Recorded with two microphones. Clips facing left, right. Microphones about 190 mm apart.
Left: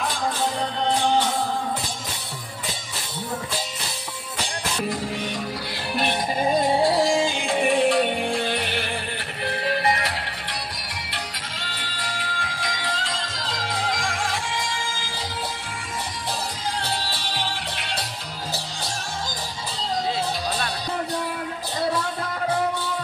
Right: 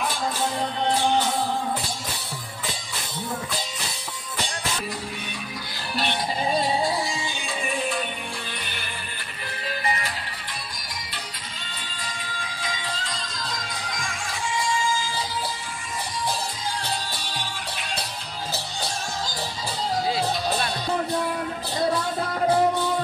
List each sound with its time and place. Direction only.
5.9 s music: 45° left (ahead or behind)
6.8 s music: 80° left
11.6 s music: 70° left (ahead or behind)